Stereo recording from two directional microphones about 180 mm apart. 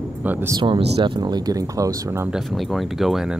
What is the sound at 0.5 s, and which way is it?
Speech, 30° right (ahead or behind).